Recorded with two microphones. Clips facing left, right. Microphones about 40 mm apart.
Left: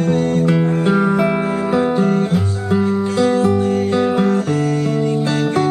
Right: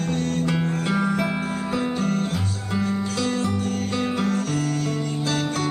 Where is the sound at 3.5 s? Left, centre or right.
Left.